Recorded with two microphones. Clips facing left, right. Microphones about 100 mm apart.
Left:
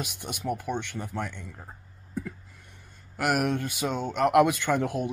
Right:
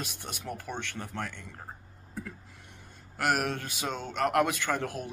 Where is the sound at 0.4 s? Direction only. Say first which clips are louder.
Left 7 dB; 15° left (ahead or behind).